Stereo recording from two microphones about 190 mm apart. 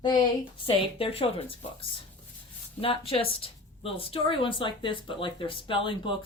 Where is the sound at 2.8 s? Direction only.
30° left (ahead or behind).